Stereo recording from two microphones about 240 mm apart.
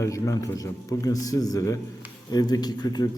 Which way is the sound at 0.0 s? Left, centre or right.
Centre.